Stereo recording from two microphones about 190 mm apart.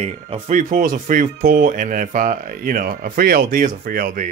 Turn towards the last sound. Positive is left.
turn(degrees=-45)  # may be behind; listen again after turning